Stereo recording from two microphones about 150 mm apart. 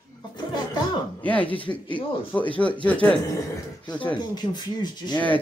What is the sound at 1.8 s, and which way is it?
Speech, 35° left (ahead or behind).